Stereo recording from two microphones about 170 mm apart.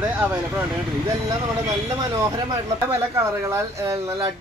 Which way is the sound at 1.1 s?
20° right (ahead or behind).